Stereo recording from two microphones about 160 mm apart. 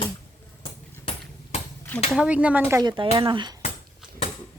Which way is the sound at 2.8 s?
30° right (ahead or behind).